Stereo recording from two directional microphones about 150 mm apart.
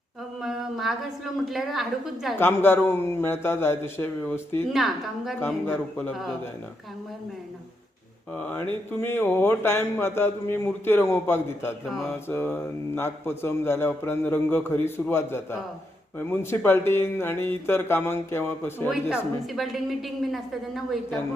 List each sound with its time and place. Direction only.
0.4 s a woman's voice: centre (ahead or behind)
2.4 s speech: 15° left (ahead or behind)
4.7 s a woman's voice: centre (ahead or behind)
5.6 s speech: 10° left (ahead or behind)
8.4 s speech: 10° left (ahead or behind)
18.9 s a woman's voice: centre (ahead or behind)